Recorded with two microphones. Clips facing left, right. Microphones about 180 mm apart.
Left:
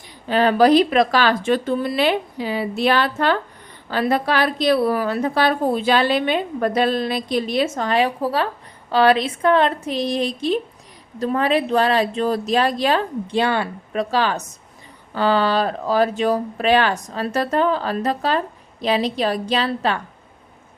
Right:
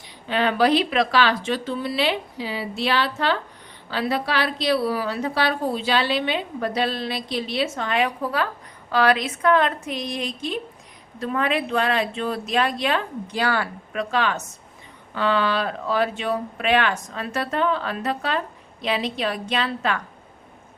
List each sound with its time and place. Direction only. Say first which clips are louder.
0.3 s a woman's voice: left 5 dB; 40° left (ahead or behind); by 13.7 s 25° left (ahead or behind)
13.9 s speech: left 3 dB; 35° left (ahead or behind)